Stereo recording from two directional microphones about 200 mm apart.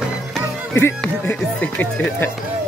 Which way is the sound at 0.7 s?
10° left (ahead or behind).